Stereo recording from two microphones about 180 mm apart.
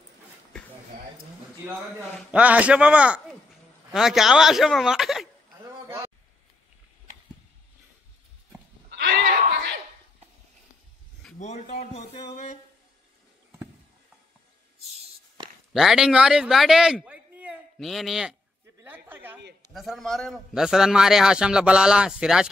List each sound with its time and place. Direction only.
1.7 s a man's voice: 10° right (ahead or behind)
8.9 s a sound: 70° right (ahead or behind)
11.3 s speech: 40° left (ahead or behind)
15.7 s a man's voice: 5° right (ahead or behind)
18.8 s a sound: 10° right (ahead or behind)
19.7 s a man's voice: centre (ahead or behind)